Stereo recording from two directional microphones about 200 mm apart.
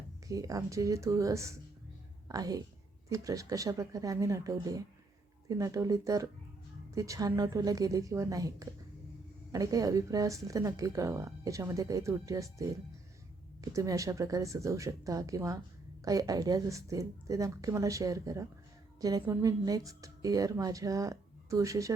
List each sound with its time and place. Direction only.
0.3 s a woman's voice: 15° right (ahead or behind)